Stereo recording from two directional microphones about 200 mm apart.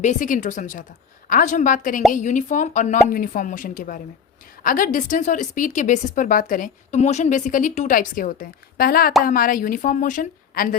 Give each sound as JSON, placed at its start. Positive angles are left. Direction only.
{"t": 0.0, "sound": "a woman's voice", "side_deg": 40}